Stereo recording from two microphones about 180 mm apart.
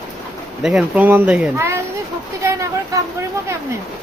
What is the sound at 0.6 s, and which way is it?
Speech, 5° right (ahead or behind).